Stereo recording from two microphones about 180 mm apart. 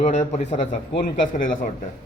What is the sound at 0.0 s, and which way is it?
A man's voice, 40° left (ahead or behind).